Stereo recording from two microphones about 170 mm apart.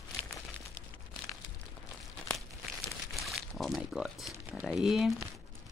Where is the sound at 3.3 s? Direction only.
Centre (ahead or behind).